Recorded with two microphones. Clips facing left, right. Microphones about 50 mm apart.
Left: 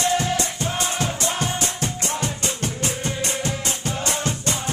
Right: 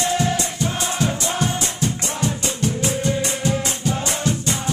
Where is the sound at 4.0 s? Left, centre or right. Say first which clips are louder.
Right 2 dB; left.